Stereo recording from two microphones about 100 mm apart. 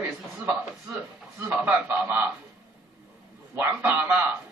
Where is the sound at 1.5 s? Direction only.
15° right (ahead or behind).